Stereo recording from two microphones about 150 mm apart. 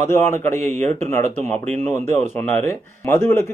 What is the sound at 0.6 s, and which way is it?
Speech, 45° right (ahead or behind).